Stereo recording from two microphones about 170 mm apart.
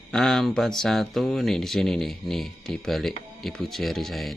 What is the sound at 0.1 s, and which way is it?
Speech, centre (ahead or behind).